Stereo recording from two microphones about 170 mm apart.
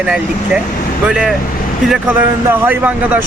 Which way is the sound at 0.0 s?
5° right (ahead or behind).